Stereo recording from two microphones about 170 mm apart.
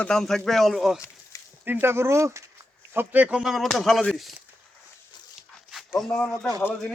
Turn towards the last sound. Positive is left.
turn(degrees=10)  # may be behind; listen again after turning